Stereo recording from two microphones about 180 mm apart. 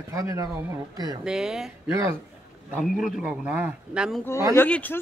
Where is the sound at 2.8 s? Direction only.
5° right (ahead or behind).